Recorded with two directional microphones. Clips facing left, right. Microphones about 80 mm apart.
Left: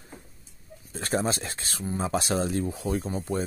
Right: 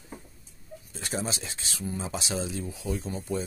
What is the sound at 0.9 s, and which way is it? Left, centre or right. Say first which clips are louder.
Speech: left 6 dB; left.